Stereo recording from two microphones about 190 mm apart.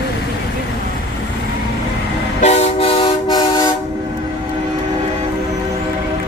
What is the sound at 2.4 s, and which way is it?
Train, 35° left (ahead or behind).